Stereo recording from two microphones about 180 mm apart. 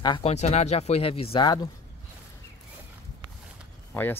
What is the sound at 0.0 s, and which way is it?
Speech, 25° left (ahead or behind).